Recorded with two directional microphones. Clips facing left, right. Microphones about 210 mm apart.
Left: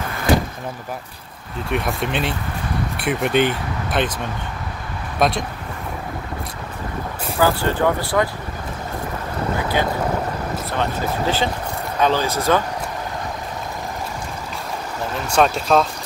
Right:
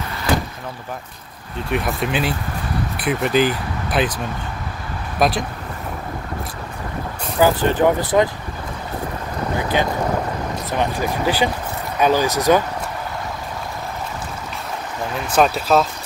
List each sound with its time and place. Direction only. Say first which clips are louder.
1.7 s speech: right 1 dB; centre (ahead or behind)
5.2 s speech: right 1 dB; centre (ahead or behind)
7.3 s speech: right 3 dB; 15° right (ahead or behind)
10.8 s speech: right 2 dB; 15° right (ahead or behind)
15.2 s speech: right 1 dB; 5° right (ahead or behind)